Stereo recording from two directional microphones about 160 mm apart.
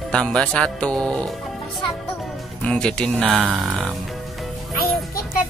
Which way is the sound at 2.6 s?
5° left (ahead or behind).